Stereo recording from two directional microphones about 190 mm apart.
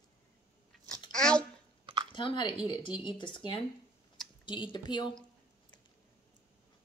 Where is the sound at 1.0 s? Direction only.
5° left (ahead or behind).